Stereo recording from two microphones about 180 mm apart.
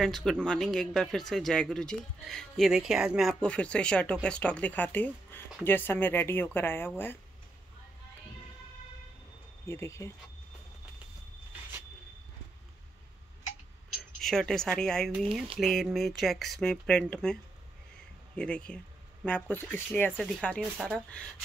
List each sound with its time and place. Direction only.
0.0 s speech: centre (ahead or behind)
9.7 s speech: 15° left (ahead or behind)
14.2 s speech: 5° left (ahead or behind)